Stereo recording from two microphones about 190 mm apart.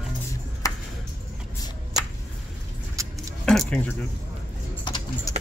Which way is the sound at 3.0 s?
15° right (ahead or behind).